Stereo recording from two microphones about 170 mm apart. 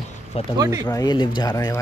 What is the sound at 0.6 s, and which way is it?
Speech, 25° right (ahead or behind).